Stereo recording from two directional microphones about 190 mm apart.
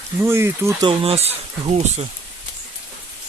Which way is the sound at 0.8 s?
30° right (ahead or behind).